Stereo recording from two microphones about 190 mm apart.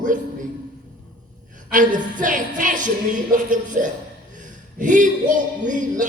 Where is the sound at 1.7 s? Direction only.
45° right (ahead or behind).